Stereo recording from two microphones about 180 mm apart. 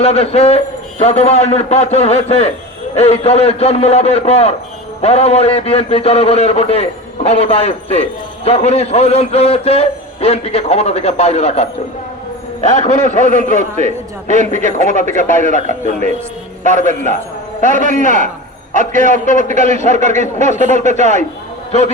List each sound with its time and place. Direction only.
0.0 s a man's voice: 35° left (ahead or behind)
13.6 s a man's voice: 40° right (ahead or behind)
21.7 s a man's voice: 40° left (ahead or behind)